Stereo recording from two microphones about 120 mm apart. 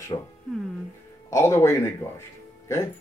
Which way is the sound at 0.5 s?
Centre (ahead or behind).